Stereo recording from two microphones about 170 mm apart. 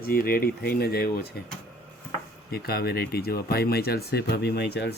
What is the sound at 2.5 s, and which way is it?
Speech, 65° left (ahead or behind).